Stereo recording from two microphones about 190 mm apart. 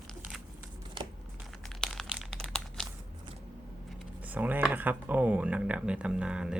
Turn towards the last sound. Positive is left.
turn(degrees=-5)  # may be behind; listen again after turning